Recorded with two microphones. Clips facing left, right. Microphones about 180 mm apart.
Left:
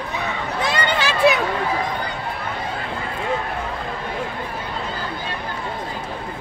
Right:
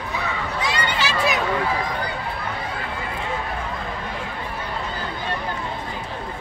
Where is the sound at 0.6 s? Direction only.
55° left (ahead or behind).